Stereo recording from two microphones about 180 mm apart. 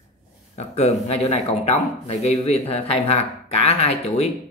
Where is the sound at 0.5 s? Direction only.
35° left (ahead or behind).